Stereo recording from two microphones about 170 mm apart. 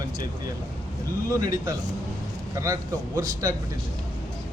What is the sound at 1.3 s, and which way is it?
Speech, 20° right (ahead or behind).